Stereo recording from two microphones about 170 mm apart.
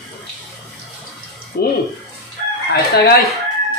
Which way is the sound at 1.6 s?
65° left (ahead or behind).